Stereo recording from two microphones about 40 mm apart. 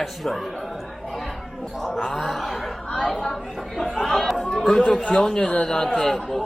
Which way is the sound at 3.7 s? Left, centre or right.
Centre.